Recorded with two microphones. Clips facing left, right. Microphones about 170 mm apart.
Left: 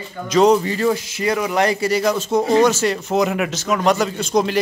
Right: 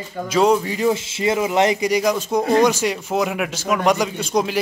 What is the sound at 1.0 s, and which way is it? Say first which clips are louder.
Speech: right 1 dB; 25° right (ahead or behind).